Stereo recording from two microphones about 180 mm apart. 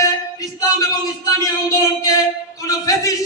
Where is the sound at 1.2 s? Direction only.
20° left (ahead or behind).